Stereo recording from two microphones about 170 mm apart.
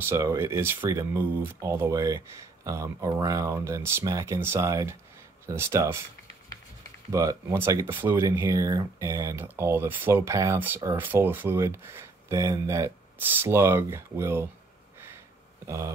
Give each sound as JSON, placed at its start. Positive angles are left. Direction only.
{"t": 0.0, "sound": "speech", "side_deg": -15}
{"t": 7.1, "sound": "speech", "side_deg": -20}
{"t": 15.6, "sound": "speech", "side_deg": -15}